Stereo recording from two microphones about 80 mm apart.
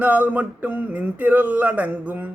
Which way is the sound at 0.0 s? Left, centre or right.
Centre.